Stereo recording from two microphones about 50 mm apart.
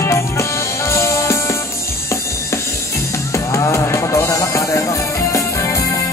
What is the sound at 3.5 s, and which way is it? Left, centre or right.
Music, left.